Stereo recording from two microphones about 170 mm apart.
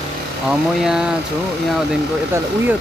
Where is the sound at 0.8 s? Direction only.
5° right (ahead or behind).